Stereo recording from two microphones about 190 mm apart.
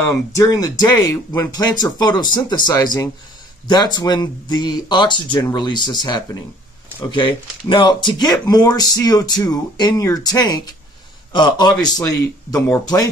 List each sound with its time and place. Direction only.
0.0 s speech: 15° left (ahead or behind)